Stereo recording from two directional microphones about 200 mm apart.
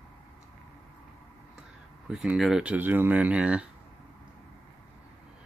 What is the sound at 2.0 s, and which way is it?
Speech, 5° right (ahead or behind).